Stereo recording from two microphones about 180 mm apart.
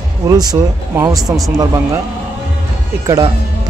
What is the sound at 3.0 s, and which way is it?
Speech, 20° right (ahead or behind).